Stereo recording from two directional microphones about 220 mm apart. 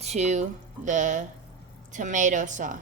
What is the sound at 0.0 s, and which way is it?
A woman's voice, 30° right (ahead or behind).